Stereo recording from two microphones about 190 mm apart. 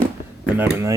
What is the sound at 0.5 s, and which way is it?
Speech, 10° right (ahead or behind).